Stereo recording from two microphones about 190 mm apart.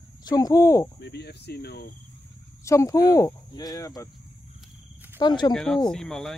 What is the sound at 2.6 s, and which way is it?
Speech, 15° left (ahead or behind).